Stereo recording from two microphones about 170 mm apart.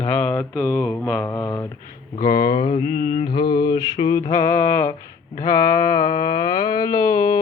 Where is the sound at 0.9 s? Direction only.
5° left (ahead or behind).